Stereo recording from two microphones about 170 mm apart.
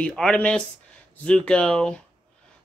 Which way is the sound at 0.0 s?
5° left (ahead or behind).